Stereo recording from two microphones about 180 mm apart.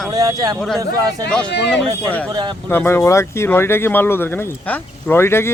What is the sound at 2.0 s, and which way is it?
Speech, 10° left (ahead or behind).